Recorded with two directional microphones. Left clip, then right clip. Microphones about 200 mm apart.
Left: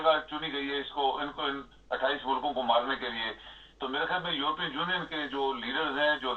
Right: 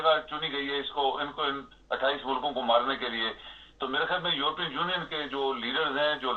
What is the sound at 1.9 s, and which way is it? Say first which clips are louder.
A man's voice: right 1 dB; 40° right (ahead or behind).